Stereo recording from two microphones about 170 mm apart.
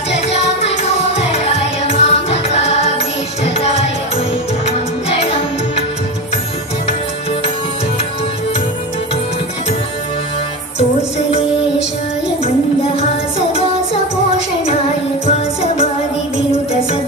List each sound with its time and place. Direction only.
0.1 s music: 40° left (ahead or behind)
15.2 s music: 40° left (ahead or behind)